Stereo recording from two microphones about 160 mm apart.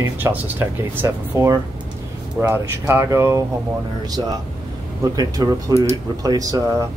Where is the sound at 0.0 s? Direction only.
10° right (ahead or behind).